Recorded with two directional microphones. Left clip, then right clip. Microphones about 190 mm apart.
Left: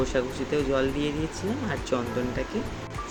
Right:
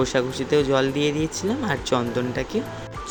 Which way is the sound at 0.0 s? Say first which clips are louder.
Right 4 dB; 50° right (ahead or behind).